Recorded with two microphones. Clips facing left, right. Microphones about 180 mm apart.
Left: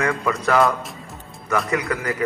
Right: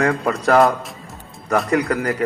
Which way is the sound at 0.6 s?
Centre (ahead or behind).